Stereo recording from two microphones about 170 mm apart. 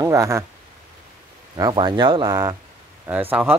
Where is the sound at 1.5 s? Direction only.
25° right (ahead or behind).